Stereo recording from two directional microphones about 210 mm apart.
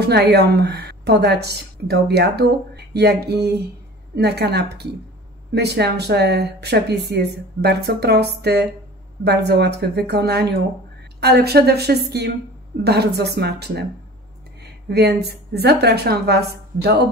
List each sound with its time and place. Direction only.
0.0 s a woman's voice: 50° right (ahead or behind)